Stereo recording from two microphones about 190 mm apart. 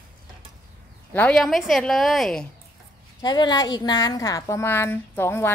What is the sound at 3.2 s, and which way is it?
A woman's voice, 20° left (ahead or behind).